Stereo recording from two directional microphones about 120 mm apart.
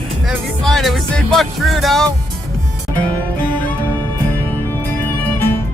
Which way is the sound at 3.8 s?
15° left (ahead or behind).